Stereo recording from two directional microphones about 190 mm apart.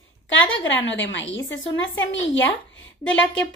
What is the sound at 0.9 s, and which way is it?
A woman's voice, 75° left (ahead or behind).